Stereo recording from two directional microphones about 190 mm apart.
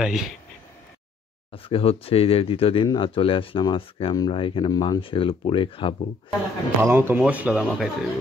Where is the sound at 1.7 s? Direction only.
30° left (ahead or behind).